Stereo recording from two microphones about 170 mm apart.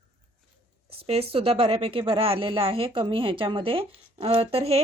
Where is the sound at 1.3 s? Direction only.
35° right (ahead or behind).